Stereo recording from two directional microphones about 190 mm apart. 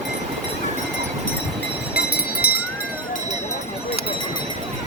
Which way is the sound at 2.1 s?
55° left (ahead or behind).